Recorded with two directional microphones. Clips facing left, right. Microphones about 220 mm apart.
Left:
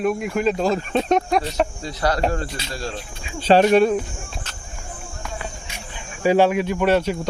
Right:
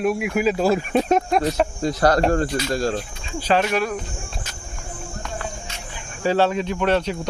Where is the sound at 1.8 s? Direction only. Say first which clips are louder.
Right 5 dB; 45° right (ahead or behind).